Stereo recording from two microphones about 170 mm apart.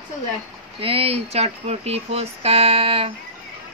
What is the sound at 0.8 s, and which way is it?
Speech, 35° right (ahead or behind).